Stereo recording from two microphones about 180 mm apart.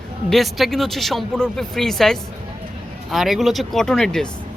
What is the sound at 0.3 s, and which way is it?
Speech, centre (ahead or behind).